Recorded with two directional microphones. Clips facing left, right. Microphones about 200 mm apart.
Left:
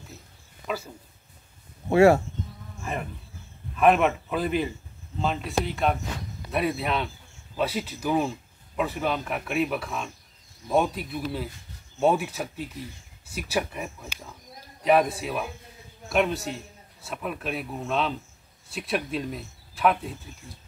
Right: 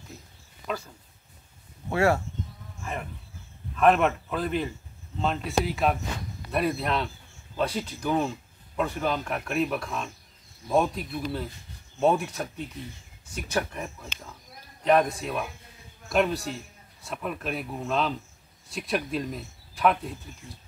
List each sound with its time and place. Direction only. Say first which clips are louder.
0.7 s speech: left 1 dB; 5° left (ahead or behind)
1.9 s speech: left 7 dB; 20° left (ahead or behind)
3.7 s speech: left 1 dB; 5° left (ahead or behind)